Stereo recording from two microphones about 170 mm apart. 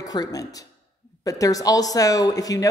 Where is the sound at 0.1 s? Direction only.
20° left (ahead or behind).